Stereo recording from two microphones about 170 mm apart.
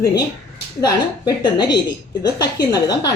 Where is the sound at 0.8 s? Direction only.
25° left (ahead or behind).